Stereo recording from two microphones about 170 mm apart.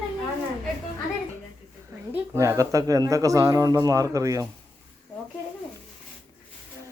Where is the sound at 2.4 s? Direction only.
20° right (ahead or behind).